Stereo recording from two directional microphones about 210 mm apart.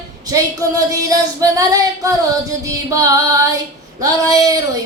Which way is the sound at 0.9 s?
15° right (ahead or behind).